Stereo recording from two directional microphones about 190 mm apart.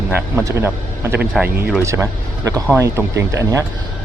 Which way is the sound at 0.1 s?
15° right (ahead or behind).